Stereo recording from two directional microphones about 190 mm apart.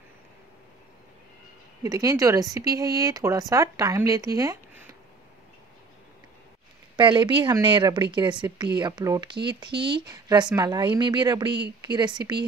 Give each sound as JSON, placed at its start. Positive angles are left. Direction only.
{"t": 1.8, "sound": "speech", "side_deg": -20}
{"t": 7.0, "sound": "speech", "side_deg": -25}